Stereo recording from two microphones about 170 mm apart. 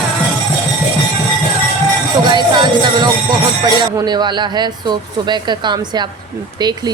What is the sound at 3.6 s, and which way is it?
Speech, 25° right (ahead or behind).